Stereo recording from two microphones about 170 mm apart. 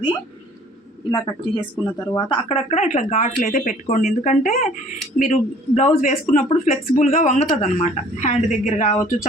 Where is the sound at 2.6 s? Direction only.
40° left (ahead or behind).